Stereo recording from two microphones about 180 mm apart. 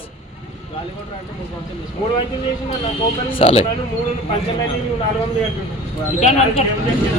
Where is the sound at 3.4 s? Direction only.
30° left (ahead or behind).